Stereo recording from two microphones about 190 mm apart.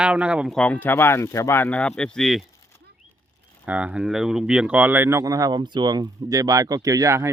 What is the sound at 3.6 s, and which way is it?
Speech, 10° right (ahead or behind).